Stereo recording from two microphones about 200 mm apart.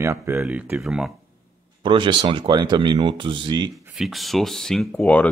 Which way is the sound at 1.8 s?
25° right (ahead or behind).